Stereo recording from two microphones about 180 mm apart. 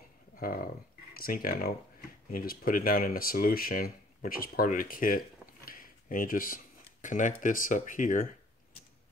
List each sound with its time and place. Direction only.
0.4 s speech: 50° left (ahead or behind)